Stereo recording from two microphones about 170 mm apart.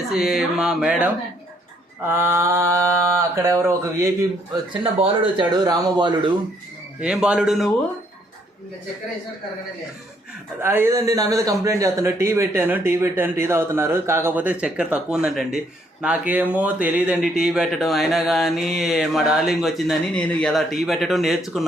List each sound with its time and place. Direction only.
0.1 s a man's voice: 5° right (ahead or behind)
4.7 s speech: 30° right (ahead or behind)
7.0 s speech: 5° right (ahead or behind)
10.6 s a man's voice: 15° right (ahead or behind)